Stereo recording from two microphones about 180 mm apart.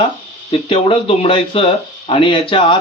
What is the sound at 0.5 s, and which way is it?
Speech, 30° left (ahead or behind).